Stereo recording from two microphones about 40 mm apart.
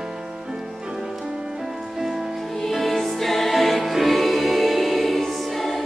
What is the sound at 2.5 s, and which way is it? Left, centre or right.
Music, centre.